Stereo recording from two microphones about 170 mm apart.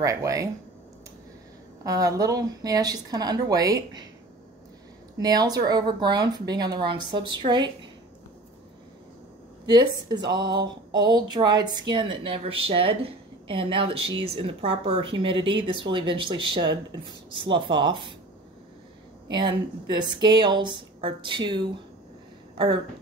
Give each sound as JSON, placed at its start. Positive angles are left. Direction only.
{"t": 0.0, "sound": "a woman's voice", "side_deg": -20}
{"t": 1.9, "sound": "a woman's voice", "side_deg": -20}
{"t": 5.1, "sound": "a woman's voice", "side_deg": -20}
{"t": 9.7, "sound": "a woman's voice", "side_deg": -25}
{"t": 19.3, "sound": "a woman's voice", "side_deg": -25}